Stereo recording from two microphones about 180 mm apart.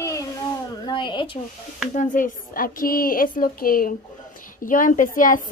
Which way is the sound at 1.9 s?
45° left (ahead or behind).